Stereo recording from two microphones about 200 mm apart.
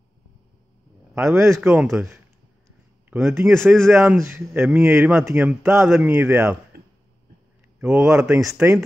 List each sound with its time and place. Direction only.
1.1 s a man's voice: 15° right (ahead or behind)
3.1 s speech: centre (ahead or behind)
3.8 s a man's voice: 10° right (ahead or behind)
6.7 s a sound: 50° right (ahead or behind)
7.8 s a man's voice: 5° right (ahead or behind)